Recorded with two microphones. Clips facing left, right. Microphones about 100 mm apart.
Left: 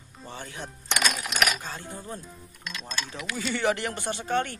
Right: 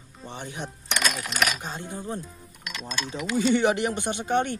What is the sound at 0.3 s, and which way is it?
Speech, 20° right (ahead or behind).